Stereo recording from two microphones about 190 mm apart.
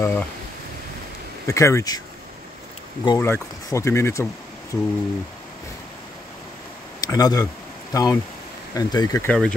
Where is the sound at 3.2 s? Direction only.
15° left (ahead or behind).